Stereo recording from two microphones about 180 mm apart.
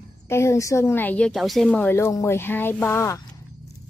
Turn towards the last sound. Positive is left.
turn(degrees=15)  # may be behind; listen again after turning